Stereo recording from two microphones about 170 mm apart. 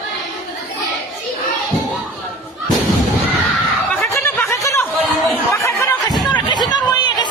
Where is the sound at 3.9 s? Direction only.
15° left (ahead or behind).